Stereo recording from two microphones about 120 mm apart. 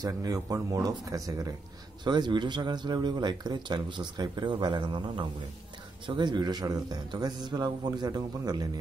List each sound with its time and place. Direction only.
0.0 s speech: 30° right (ahead or behind)